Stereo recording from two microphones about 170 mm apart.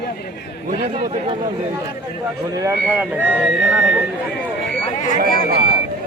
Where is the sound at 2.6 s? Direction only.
10° right (ahead or behind).